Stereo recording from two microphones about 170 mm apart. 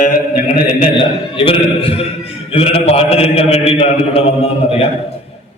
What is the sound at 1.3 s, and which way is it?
A man's voice, 30° left (ahead or behind).